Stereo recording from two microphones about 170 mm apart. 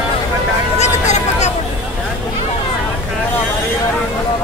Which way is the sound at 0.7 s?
40° left (ahead or behind).